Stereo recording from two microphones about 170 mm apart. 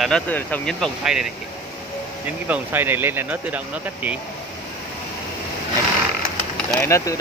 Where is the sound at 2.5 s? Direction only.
10° right (ahead or behind).